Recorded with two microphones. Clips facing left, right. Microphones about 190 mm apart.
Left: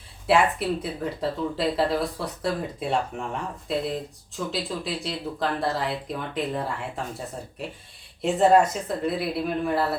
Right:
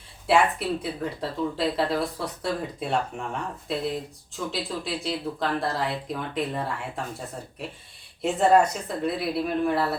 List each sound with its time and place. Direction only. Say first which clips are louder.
0.3 s speech: left 1 dB; centre (ahead or behind)
8.2 s speech: left 1 dB; centre (ahead or behind)